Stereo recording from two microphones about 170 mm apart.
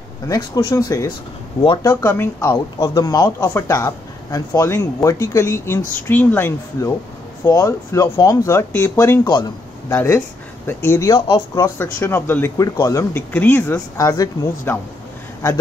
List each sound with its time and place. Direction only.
0.3 s speech: 20° left (ahead or behind)
1.9 s a man's voice: 15° left (ahead or behind)
11.6 s speech: 15° left (ahead or behind)